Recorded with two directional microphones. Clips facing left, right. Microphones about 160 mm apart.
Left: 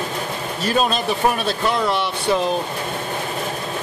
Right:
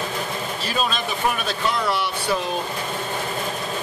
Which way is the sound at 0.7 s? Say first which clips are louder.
Left 6 dB; 45° left (ahead or behind).